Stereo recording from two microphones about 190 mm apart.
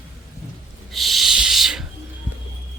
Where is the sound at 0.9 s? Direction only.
Centre (ahead or behind).